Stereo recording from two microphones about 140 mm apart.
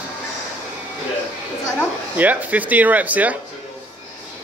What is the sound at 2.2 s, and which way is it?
Speech, 10° right (ahead or behind).